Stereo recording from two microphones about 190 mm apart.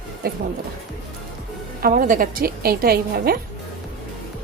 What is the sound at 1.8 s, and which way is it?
A woman's voice, 45° right (ahead or behind).